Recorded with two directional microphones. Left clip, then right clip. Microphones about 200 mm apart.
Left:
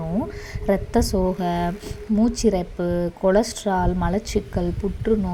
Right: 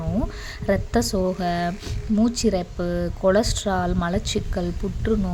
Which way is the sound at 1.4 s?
5° right (ahead or behind).